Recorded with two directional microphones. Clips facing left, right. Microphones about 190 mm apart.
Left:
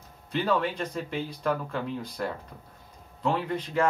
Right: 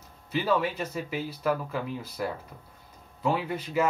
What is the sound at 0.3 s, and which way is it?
Speech, 5° right (ahead or behind).